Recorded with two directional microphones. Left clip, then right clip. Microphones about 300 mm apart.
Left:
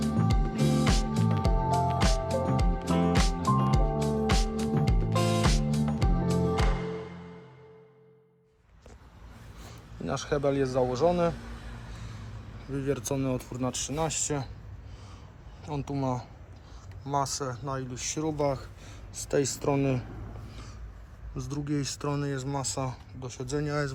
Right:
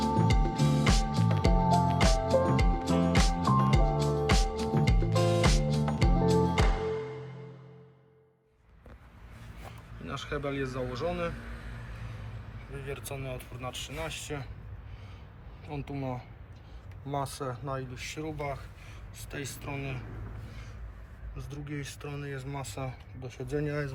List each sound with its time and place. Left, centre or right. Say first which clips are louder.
0.0 s music: right 3 dB; centre
10.1 s speech: left 7 dB; centre
12.9 s speech: left 9 dB; centre
15.6 s speech: left 5 dB; centre
19.3 s speech: left 12 dB; centre
21.3 s speech: left 8 dB; centre